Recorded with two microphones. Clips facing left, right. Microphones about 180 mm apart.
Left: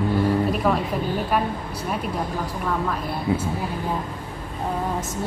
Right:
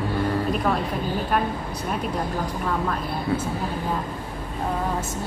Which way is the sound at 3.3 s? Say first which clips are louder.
Left 2 dB; 20° left (ahead or behind).